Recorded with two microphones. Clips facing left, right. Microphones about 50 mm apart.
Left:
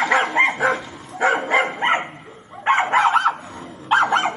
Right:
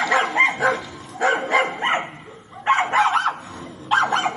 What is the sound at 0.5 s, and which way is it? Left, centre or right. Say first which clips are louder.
Bow-wow: even; left.